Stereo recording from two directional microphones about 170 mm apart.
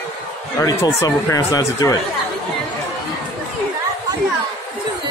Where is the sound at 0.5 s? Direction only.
20° left (ahead or behind).